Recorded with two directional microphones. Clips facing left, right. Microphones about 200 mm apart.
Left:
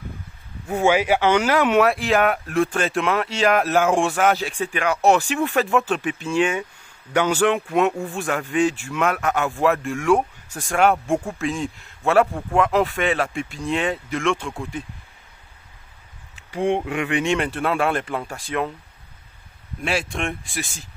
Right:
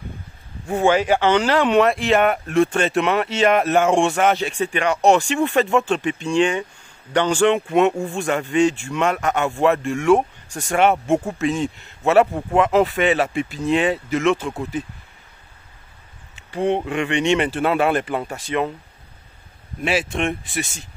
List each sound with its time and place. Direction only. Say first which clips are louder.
0.7 s speech: right 1 dB; 10° left (ahead or behind)
12.3 s speech: right 3 dB; 15° right (ahead or behind)
12.5 s speech: right 3 dB; centre (ahead or behind)
16.4 s speech: right 1 dB; 10° left (ahead or behind)
19.8 s speech: right 3 dB; centre (ahead or behind)